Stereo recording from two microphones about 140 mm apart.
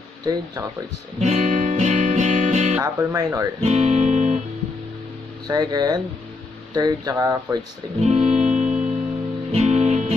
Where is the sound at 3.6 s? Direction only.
55° right (ahead or behind).